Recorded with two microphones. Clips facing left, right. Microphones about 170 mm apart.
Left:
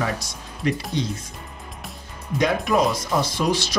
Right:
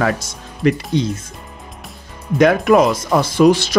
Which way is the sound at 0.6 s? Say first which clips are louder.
Right 8 dB; 65° right (ahead or behind).